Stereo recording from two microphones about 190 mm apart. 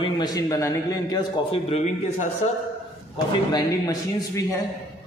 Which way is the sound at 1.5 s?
30° left (ahead or behind).